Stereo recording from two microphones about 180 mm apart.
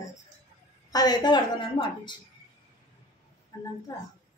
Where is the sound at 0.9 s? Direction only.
20° left (ahead or behind).